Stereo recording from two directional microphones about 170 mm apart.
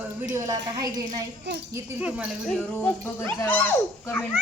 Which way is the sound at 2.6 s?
10° left (ahead or behind).